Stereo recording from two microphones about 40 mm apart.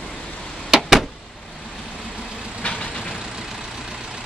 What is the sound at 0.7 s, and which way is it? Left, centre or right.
Vehicle, centre.